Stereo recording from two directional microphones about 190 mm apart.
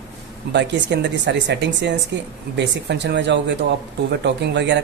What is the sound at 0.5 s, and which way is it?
Speech, 65° right (ahead or behind).